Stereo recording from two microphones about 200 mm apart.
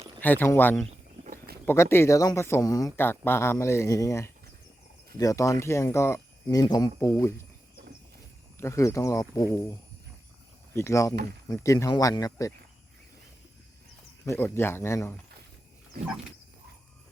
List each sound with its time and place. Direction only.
0.2 s speech: 10° left (ahead or behind)
0.9 s insect: 35° right (ahead or behind)
1.6 s speech: 10° left (ahead or behind)
8.5 s speech: 15° left (ahead or behind)
10.8 s speech: 15° left (ahead or behind)
14.3 s speech: 10° left (ahead or behind)